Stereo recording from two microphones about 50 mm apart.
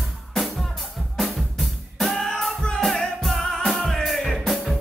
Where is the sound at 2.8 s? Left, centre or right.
Centre.